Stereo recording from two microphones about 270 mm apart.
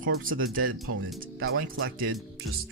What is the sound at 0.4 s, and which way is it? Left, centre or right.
Speech, right.